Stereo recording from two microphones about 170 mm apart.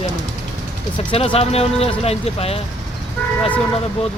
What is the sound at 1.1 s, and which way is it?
Speech, 35° left (ahead or behind).